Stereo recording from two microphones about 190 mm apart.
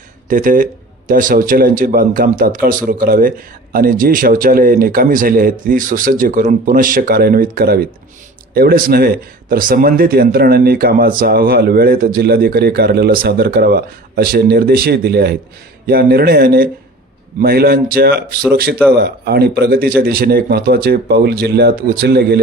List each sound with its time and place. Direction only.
0.3 s a man's voice: 45° right (ahead or behind)